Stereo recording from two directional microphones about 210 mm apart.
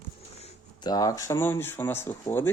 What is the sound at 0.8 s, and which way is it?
Speech, 15° left (ahead or behind).